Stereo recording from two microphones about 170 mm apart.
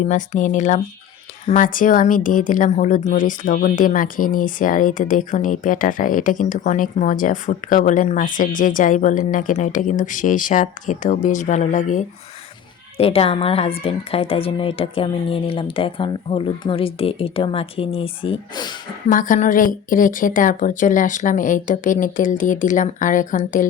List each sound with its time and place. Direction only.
0.1 s speech: 45° left (ahead or behind)
13.0 s speech: 35° left (ahead or behind)
19.0 s speech: 50° left (ahead or behind)